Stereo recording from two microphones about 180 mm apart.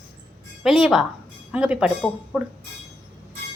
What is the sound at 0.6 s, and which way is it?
Speech, centre (ahead or behind).